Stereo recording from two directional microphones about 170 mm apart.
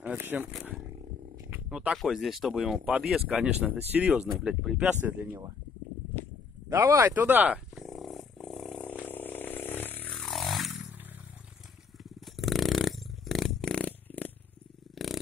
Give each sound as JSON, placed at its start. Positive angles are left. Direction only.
{"t": 0.0, "sound": "speech", "side_deg": -10}
{"t": 0.5, "sound": "speech", "side_deg": 0}
{"t": 6.7, "sound": "wild animals", "side_deg": -15}
{"t": 12.0, "sound": "a sound", "side_deg": 0}